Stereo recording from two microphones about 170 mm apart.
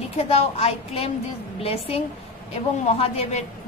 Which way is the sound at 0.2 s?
35° left (ahead or behind).